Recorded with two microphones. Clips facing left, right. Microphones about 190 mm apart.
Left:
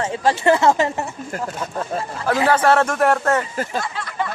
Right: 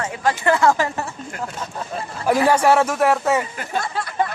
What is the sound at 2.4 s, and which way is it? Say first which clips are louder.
Speech: left 1 dB; 10° right (ahead or behind).